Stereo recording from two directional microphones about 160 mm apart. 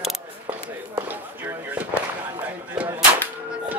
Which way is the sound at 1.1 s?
10° right (ahead or behind).